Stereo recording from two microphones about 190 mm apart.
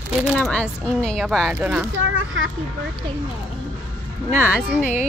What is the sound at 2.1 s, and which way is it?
Speech, 80° right.